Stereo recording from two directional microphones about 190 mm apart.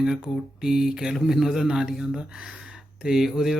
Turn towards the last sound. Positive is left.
turn(degrees=0)  # may be behind; listen again after turning